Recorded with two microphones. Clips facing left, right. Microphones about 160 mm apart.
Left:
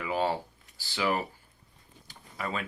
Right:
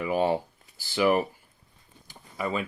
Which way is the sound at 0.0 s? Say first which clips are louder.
Right 4 dB; 20° right (ahead or behind).